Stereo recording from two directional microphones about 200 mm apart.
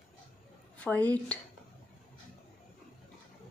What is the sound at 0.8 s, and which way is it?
Speech, 5° left (ahead or behind).